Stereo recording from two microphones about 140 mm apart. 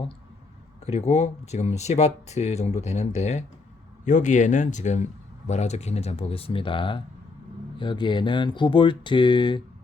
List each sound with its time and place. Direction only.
0.9 s speech: 50° left (ahead or behind); by 9.6 s 35° left (ahead or behind)